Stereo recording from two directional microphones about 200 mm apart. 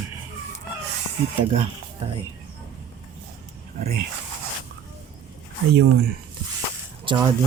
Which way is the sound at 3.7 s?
50° right (ahead or behind).